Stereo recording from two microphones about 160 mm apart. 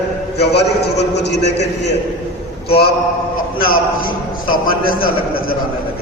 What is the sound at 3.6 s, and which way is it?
A man's voice, 65° left (ahead or behind).